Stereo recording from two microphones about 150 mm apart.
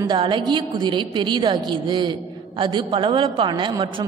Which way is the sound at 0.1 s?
30° right (ahead or behind).